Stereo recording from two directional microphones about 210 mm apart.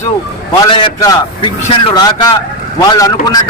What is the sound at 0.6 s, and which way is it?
A man's voice, 20° left (ahead or behind).